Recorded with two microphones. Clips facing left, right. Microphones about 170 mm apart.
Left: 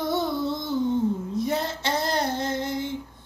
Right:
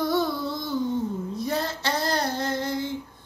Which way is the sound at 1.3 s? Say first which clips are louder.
Left 2 dB; 20° left (ahead or behind).